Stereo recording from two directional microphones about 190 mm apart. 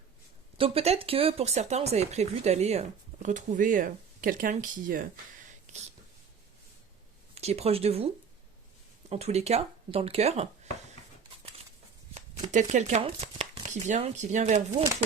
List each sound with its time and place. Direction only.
0.6 s speech: 30° right (ahead or behind)
5.7 s a sound: 40° right (ahead or behind)
7.3 s speech: 35° right (ahead or behind)
12.1 s shuffling cards: 40° right (ahead or behind)
13.0 s speech: 30° right (ahead or behind)